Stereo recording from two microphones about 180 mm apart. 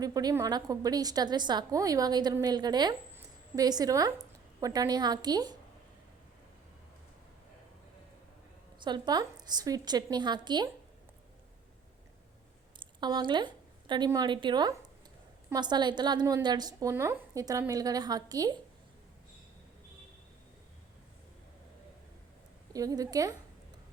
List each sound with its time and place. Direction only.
0.0 s a woman's voice: 20° right (ahead or behind)
8.8 s a woman's voice: 25° right (ahead or behind)
12.8 s a woman's voice: 25° right (ahead or behind)
22.7 s a woman's voice: 20° right (ahead or behind)